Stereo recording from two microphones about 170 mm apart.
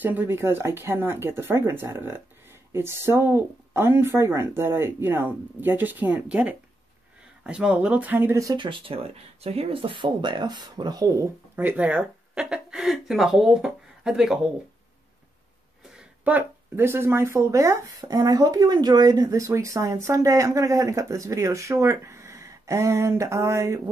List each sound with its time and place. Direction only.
0.0 s speech: 10° right (ahead or behind)
11.5 s speech: 10° right (ahead or behind)
15.8 s speech: 5° right (ahead or behind)